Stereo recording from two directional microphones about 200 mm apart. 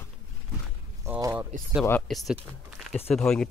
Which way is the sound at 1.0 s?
10° right (ahead or behind).